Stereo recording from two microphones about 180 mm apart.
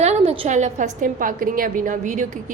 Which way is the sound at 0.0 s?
35° right (ahead or behind).